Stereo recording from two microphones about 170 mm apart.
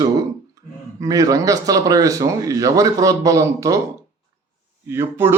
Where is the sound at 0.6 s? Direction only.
20° right (ahead or behind).